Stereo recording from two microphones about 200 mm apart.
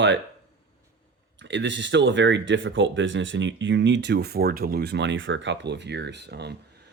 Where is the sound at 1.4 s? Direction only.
65° right (ahead or behind).